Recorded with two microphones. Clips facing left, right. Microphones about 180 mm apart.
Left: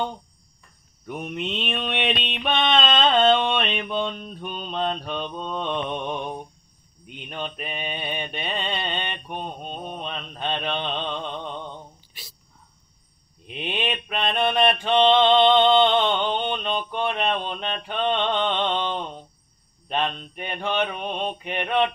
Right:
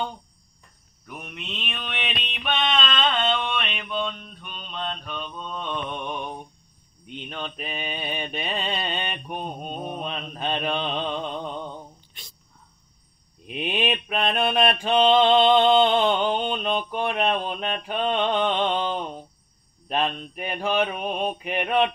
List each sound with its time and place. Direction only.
1.0 s mantra: 30° left (ahead or behind)
7.2 s mantra: 5° left (ahead or behind)
12.1 s cricket: 5° left (ahead or behind)
13.5 s mantra: 5° right (ahead or behind)